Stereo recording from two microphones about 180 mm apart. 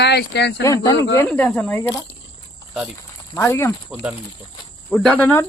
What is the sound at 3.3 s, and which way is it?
Speech, 15° left (ahead or behind).